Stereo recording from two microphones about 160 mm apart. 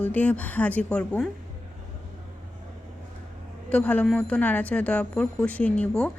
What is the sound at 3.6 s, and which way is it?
Speech, 10° left (ahead or behind).